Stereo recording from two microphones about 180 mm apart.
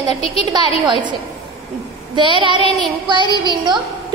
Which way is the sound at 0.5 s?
25° right (ahead or behind).